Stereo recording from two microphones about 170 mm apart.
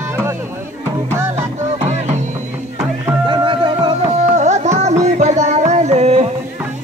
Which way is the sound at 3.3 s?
30° right (ahead or behind).